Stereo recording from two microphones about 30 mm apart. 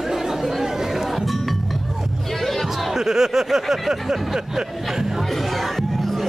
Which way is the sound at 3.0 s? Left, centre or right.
Centre.